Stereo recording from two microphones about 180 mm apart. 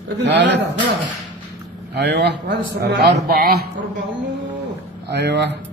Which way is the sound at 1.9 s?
70° right (ahead or behind).